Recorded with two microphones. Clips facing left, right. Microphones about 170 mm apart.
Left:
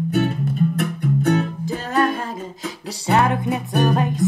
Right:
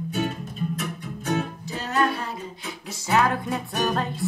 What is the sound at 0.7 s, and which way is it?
Music, 60° left (ahead or behind).